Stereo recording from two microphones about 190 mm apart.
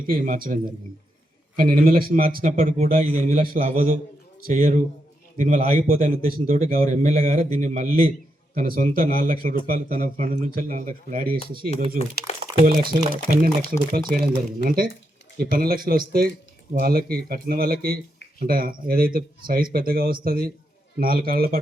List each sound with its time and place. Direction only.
0.1 s speech: 50° right (ahead or behind)
5.4 s speech: 45° right (ahead or behind)
12.9 s speech: 50° right (ahead or behind)